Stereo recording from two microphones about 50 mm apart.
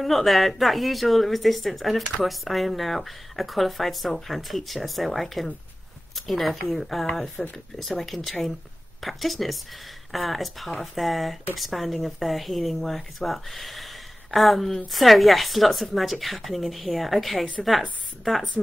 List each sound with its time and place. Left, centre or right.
0.0 s a woman's voice: centre